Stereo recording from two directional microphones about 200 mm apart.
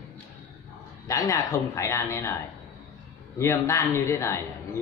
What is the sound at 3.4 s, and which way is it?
Speech, 15° left (ahead or behind).